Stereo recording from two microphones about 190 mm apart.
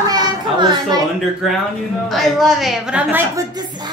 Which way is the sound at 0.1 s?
20° right (ahead or behind).